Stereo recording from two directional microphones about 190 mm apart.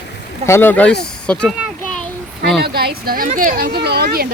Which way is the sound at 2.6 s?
55° right (ahead or behind).